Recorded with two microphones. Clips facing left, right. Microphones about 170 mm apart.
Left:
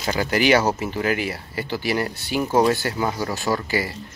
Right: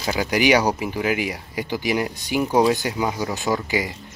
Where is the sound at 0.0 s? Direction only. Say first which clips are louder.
Even; 10° right (ahead or behind).